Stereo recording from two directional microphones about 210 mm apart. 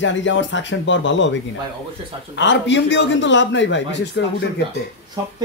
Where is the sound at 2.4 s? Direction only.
60° left (ahead or behind).